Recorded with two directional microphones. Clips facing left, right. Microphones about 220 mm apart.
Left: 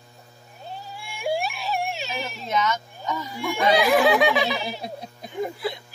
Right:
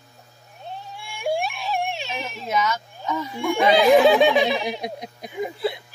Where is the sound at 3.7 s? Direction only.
25° right (ahead or behind).